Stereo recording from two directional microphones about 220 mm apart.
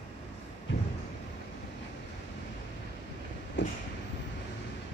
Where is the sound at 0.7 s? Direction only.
55° left (ahead or behind).